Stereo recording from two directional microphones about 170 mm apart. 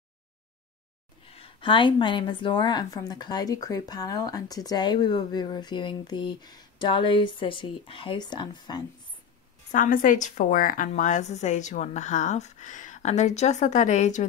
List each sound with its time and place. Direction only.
1.2 s a woman's voice: 35° left (ahead or behind)
9.7 s a woman's voice: 50° left (ahead or behind)